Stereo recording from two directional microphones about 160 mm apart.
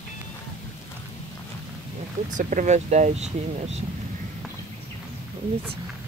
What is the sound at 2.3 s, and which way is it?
Speech, 50° right (ahead or behind).